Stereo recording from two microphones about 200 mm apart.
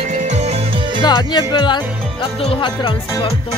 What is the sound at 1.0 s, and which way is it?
Speech, 20° left (ahead or behind).